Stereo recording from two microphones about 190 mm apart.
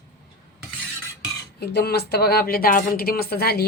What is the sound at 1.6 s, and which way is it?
A woman's voice, 60° left (ahead or behind).